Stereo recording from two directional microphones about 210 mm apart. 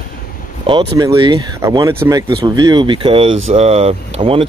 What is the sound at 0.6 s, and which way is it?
Speech, 20° right (ahead or behind).